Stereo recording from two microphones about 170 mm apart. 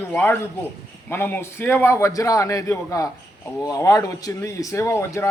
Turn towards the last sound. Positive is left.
turn(degrees=15)  # may be behind; listen again after turning